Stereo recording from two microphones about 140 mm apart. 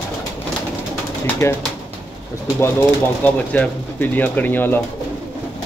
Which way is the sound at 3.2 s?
10° left (ahead or behind).